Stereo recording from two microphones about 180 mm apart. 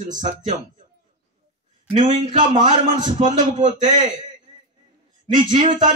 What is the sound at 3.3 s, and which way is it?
Speech, 45° right (ahead or behind).